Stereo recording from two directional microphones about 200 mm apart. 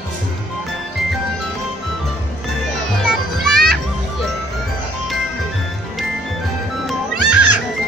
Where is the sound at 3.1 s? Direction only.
Centre (ahead or behind).